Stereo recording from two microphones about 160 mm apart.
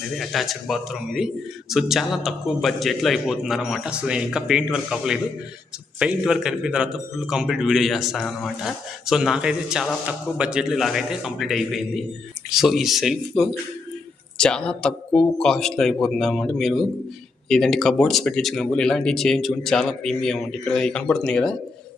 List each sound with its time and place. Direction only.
0.2 s a man's voice: centre (ahead or behind)